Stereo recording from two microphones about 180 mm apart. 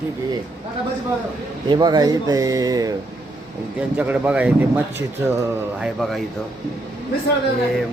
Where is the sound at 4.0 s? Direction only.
10° right (ahead or behind).